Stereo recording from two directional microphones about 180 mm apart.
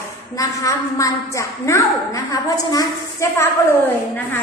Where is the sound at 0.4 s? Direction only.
20° left (ahead or behind).